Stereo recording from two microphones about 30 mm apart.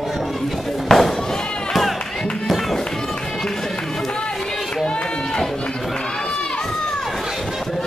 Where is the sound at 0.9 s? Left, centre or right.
Centre.